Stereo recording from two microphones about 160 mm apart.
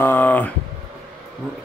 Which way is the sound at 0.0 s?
10° left (ahead or behind).